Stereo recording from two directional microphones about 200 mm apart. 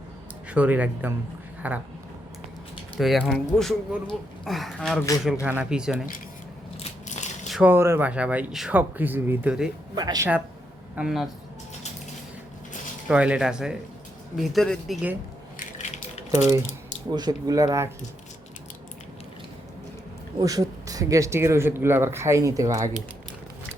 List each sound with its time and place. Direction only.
0.5 s speech: 5° right (ahead or behind)
3.0 s speech: centre (ahead or behind)
6.7 s biting: 35° left (ahead or behind)
7.4 s speech: 5° right (ahead or behind)
9.9 s speech: 20° right (ahead or behind)
10.9 s speech: centre (ahead or behind)
13.1 s speech: 5° right (ahead or behind)
15.5 s a sound: 35° left (ahead or behind)
17.1 s speech: 20° right (ahead or behind)
20.4 s speech: 15° right (ahead or behind)